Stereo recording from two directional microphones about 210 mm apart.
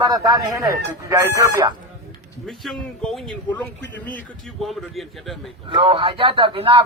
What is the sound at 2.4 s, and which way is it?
A man's voice, 5° left (ahead or behind).